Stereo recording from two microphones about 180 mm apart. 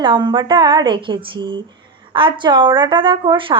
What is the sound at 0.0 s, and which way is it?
Speech, 25° right (ahead or behind).